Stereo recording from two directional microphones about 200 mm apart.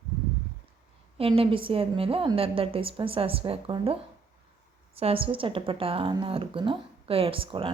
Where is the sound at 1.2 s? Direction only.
25° right (ahead or behind).